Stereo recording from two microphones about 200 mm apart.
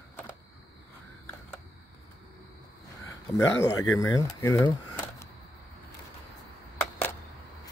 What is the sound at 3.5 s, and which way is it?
Speech, 15° left (ahead or behind).